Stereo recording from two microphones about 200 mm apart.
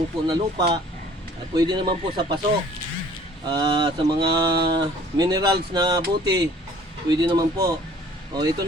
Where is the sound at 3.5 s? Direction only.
20° right (ahead or behind).